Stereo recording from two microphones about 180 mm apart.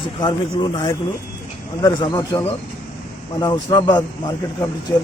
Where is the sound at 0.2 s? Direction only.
25° left (ahead or behind).